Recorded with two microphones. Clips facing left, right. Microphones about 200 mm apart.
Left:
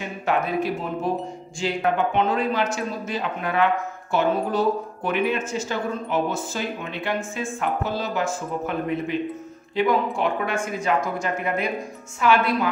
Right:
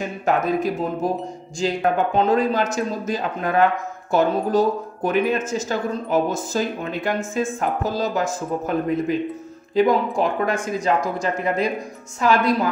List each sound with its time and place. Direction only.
0.2 s speech: 45° right (ahead or behind)